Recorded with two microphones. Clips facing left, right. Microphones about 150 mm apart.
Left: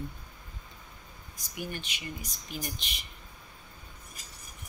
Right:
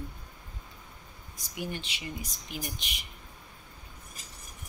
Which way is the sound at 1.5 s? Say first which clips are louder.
Right 1 dB; 25° right (ahead or behind).